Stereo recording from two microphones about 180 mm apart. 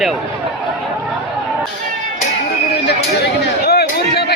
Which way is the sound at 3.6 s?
60° left (ahead or behind).